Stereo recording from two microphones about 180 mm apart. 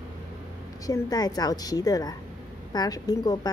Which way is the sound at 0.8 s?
20° left (ahead or behind).